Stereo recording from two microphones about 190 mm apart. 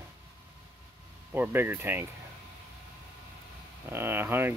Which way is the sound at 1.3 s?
10° right (ahead or behind).